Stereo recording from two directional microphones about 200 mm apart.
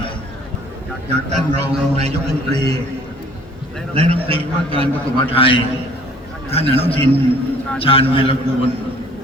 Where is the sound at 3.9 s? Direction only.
30° right (ahead or behind).